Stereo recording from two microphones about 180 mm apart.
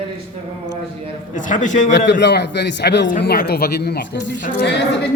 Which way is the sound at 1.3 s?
45° left (ahead or behind).